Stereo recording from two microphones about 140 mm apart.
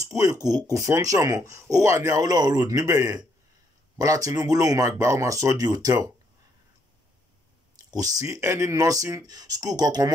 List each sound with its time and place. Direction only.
0.1 s speech: 25° right (ahead or behind)
7.7 s speech: 25° right (ahead or behind)